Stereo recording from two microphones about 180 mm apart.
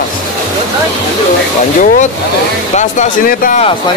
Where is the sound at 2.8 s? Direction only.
45° left (ahead or behind).